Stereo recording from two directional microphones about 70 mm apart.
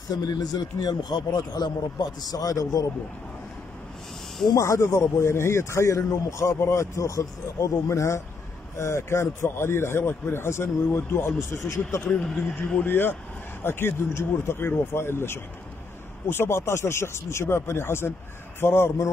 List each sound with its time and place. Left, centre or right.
0.1 s a man's voice: left
4.6 s speech: left
11.5 s speech: left
12.2 s speech: centre
12.6 s speech: left